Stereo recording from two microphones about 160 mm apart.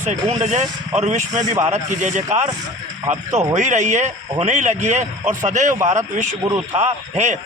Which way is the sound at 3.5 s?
50° right (ahead or behind).